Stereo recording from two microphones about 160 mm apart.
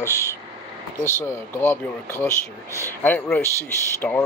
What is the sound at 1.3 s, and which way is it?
Speech, 15° left (ahead or behind).